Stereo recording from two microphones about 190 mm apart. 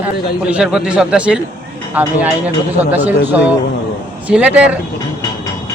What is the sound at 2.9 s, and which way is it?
Speech, 5° right (ahead or behind).